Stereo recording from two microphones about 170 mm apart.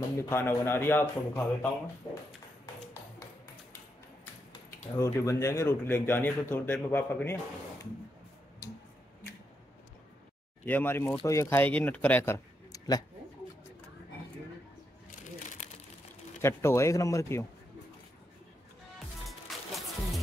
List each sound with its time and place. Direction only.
0.3 s speech: 15° left (ahead or behind)
2.6 s tap: 20° left (ahead or behind)
4.9 s speech: 20° left (ahead or behind)
10.6 s speech: 10° left (ahead or behind)
15.0 s shuffling cards: 50° left (ahead or behind)
16.3 s speech: 15° left (ahead or behind)
18.9 s music: centre (ahead or behind)